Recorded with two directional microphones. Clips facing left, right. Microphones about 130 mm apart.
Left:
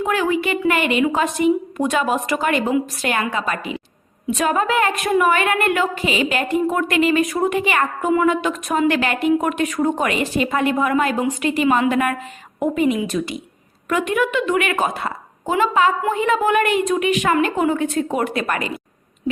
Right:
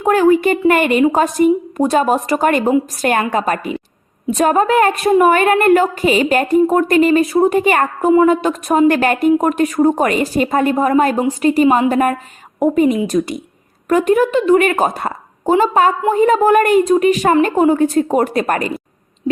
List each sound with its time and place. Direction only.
0.0 s a woman's voice: 45° right (ahead or behind)